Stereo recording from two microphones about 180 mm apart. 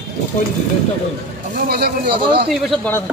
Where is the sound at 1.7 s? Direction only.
60° right (ahead or behind).